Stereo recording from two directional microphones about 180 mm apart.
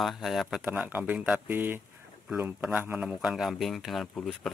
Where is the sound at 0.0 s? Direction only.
Centre (ahead or behind).